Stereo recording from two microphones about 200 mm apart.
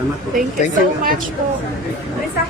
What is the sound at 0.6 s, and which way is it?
Speech, 35° left (ahead or behind).